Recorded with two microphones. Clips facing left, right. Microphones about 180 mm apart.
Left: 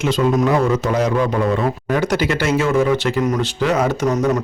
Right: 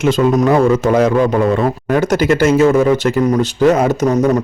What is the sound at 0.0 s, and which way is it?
Speech, 50° right (ahead or behind).